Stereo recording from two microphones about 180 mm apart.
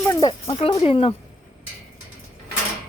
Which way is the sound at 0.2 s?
30° left (ahead or behind).